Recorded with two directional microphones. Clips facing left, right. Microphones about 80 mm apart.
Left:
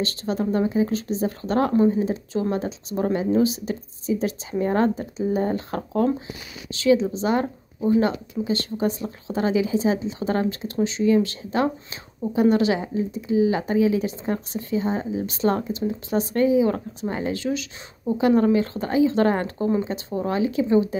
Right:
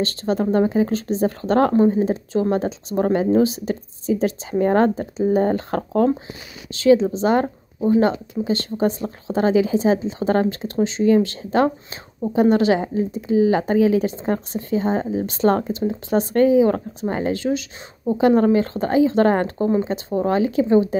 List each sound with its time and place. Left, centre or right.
0.0 s speech: right
1.8 s speech: right